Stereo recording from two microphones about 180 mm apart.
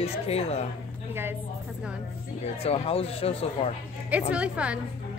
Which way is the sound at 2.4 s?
35° left (ahead or behind).